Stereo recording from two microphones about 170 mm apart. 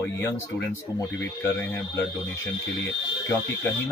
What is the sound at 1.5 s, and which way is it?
Speech, 15° left (ahead or behind).